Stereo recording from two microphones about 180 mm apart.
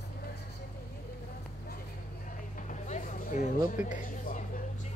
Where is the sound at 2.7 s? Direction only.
45° left (ahead or behind).